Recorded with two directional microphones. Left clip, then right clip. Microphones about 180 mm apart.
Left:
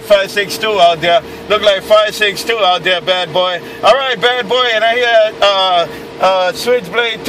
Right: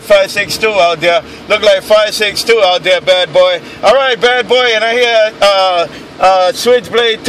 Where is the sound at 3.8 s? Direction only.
35° right (ahead or behind).